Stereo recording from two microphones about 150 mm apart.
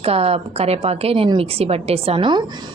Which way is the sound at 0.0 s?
40° right (ahead or behind).